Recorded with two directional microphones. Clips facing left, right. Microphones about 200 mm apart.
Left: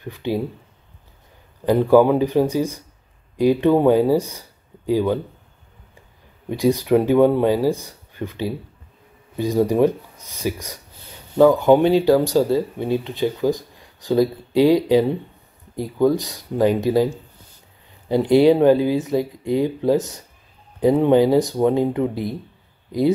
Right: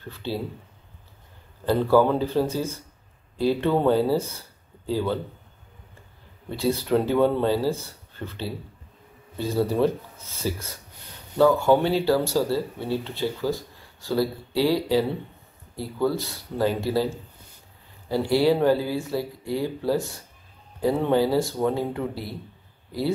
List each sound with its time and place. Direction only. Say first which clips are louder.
0.0 s speech: left 6 dB; 15° left (ahead or behind)
1.7 s speech: left 5 dB; 15° left (ahead or behind)
6.5 s speech: left 6 dB; 15° left (ahead or behind)